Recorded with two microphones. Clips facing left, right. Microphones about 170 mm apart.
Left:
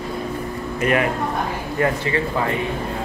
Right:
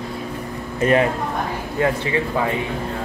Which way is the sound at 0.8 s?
30° right (ahead or behind).